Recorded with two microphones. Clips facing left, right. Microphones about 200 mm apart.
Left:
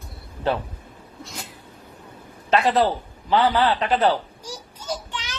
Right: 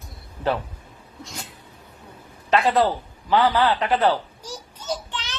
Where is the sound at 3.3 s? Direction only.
30° left (ahead or behind).